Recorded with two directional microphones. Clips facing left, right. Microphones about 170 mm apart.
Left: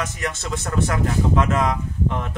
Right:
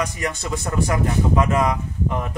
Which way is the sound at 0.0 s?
Centre (ahead or behind).